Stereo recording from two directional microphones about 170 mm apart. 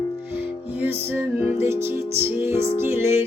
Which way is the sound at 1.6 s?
15° right (ahead or behind).